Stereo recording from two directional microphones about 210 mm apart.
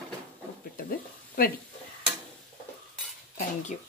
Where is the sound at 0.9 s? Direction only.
45° left (ahead or behind).